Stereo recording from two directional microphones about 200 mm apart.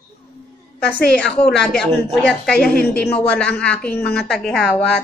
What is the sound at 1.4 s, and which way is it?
A woman's voice, 5° left (ahead or behind).